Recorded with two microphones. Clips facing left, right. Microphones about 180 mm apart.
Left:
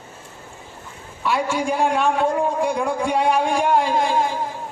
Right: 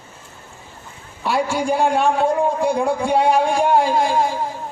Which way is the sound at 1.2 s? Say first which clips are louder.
Right 2 dB; 35° right (ahead or behind).